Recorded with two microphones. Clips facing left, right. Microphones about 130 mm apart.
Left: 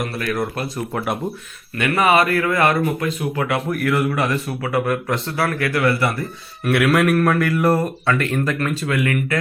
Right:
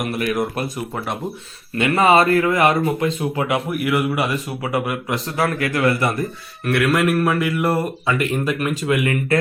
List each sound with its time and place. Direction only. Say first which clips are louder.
0.0 s speech: right 2 dB; 15° right (ahead or behind)
1.7 s speech: right 2 dB; 25° right (ahead or behind)
3.7 s speech: even; 10° right (ahead or behind)
6.7 s a man's voice: left 1 dB; 5° left (ahead or behind); by 9.1 s 20° right (ahead or behind)